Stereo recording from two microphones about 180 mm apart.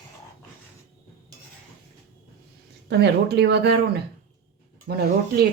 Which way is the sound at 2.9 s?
65° right (ahead or behind).